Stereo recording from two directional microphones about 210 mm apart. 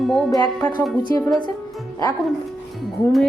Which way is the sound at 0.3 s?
20° left (ahead or behind).